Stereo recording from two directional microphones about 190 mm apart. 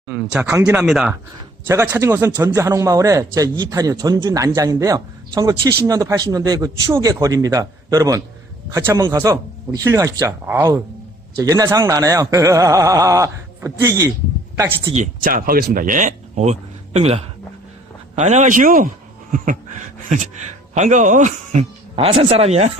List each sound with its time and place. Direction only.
0.1 s a man's voice: 5° right (ahead or behind)
14.9 s speech: 45° right (ahead or behind)
19.3 s a sound: 40° right (ahead or behind)
20.7 s speech: 40° right (ahead or behind)